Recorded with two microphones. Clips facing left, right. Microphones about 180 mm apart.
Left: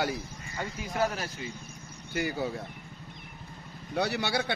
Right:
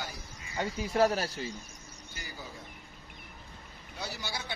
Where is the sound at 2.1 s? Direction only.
65° left (ahead or behind).